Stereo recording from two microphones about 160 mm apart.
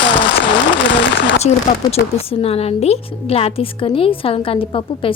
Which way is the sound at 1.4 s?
40° left (ahead or behind).